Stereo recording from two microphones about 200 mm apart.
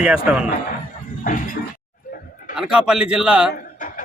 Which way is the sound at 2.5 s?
5° right (ahead or behind).